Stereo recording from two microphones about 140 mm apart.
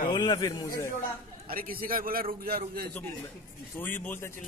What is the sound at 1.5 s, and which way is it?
A man's voice, 90° right.